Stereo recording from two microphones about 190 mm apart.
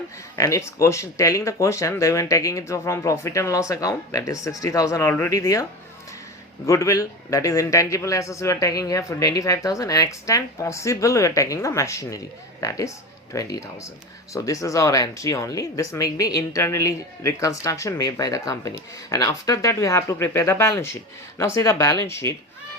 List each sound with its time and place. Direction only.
0.3 s speech: 15° left (ahead or behind)
6.7 s speech: 15° left (ahead or behind)